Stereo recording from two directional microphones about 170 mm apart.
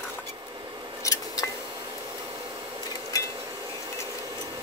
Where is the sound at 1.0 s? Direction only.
20° left (ahead or behind).